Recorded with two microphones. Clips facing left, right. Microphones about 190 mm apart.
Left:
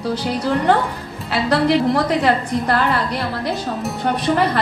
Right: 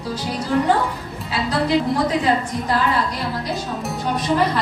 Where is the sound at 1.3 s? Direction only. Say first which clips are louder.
Left 4 dB; 65° left (ahead or behind).